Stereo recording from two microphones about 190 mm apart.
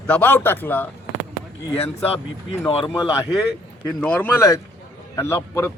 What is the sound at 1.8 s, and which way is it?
Speech, 30° left (ahead or behind).